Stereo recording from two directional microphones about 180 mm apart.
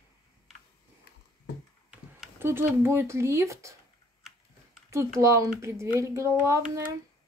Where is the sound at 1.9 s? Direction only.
10° right (ahead or behind).